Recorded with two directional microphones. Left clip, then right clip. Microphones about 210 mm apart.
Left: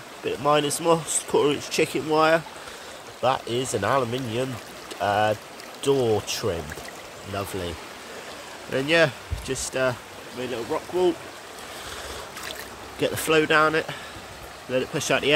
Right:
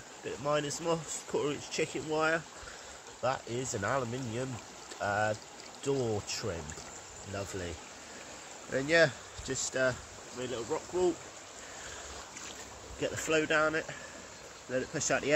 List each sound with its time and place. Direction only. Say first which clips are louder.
0.2 s speech: left 11 dB; 25° left (ahead or behind)
8.7 s speech: left 6 dB; 10° left (ahead or behind)
13.0 s speech: left 9 dB; 25° left (ahead or behind)